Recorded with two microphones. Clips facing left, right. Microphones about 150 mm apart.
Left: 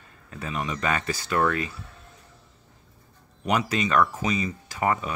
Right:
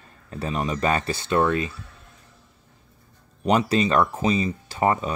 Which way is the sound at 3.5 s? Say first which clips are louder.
Right 4 dB; 30° right (ahead or behind).